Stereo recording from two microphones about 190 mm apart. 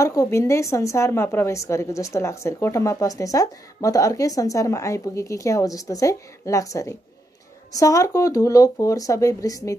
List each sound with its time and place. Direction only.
0.0 s a woman's voice: 15° left (ahead or behind)